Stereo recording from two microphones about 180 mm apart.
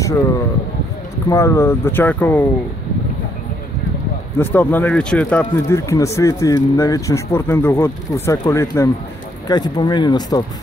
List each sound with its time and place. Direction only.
1.3 s speech: 15° left (ahead or behind)
4.4 s speech: 10° left (ahead or behind)